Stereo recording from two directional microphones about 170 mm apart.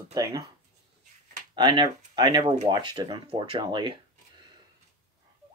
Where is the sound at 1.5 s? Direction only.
25° right (ahead or behind).